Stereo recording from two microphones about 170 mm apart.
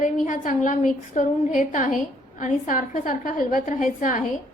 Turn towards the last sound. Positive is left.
turn(degrees=50)  # may be behind; listen again after turning